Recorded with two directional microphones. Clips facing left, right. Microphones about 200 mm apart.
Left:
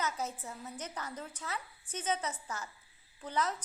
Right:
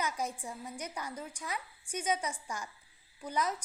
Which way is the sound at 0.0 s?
15° right (ahead or behind).